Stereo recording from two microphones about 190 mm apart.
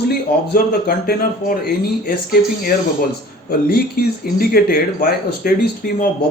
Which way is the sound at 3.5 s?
55° left (ahead or behind).